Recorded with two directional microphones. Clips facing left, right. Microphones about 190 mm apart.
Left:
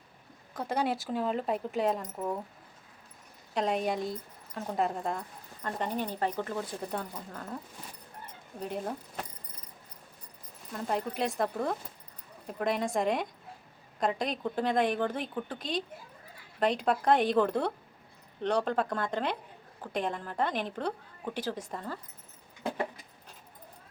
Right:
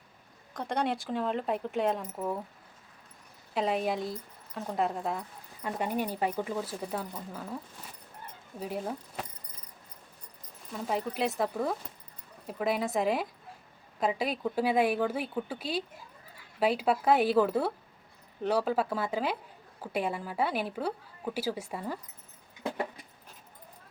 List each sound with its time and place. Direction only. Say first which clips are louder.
0.5 s speech: even; 5° left (ahead or behind)
3.5 s speech: even; centre (ahead or behind)
10.7 s a woman's voice: even; centre (ahead or behind)